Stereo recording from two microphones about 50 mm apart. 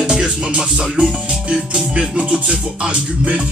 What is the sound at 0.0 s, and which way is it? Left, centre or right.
Music, centre.